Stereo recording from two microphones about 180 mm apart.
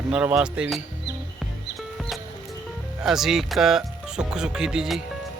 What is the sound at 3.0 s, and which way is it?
A man's voice, centre (ahead or behind).